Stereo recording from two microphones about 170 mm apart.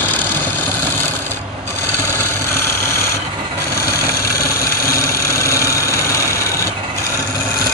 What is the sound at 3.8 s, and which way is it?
Engine, 65° left (ahead or behind).